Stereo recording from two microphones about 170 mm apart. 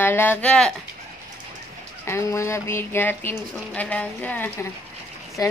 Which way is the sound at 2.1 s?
15° left (ahead or behind).